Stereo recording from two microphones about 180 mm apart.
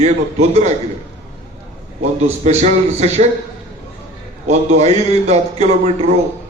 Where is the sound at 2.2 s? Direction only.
35° right (ahead or behind).